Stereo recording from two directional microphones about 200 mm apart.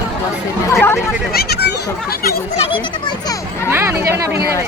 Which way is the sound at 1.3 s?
50° left (ahead or behind).